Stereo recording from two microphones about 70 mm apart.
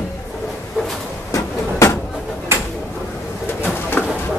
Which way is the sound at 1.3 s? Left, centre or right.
Left.